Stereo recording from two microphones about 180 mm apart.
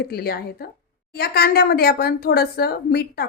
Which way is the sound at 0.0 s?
60° left (ahead or behind).